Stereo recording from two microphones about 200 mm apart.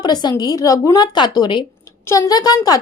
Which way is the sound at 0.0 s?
20° left (ahead or behind).